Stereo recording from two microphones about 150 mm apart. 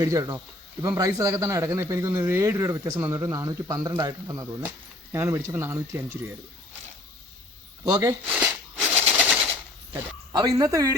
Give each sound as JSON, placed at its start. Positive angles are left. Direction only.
{"t": 0.0, "sound": "speech", "side_deg": -20}
{"t": 7.9, "sound": "speech", "side_deg": -20}
{"t": 8.3, "sound": "a sound", "side_deg": -10}
{"t": 10.3, "sound": "speech", "side_deg": -25}